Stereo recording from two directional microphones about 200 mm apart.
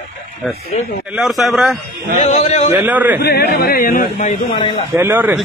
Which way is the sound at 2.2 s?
35° left (ahead or behind).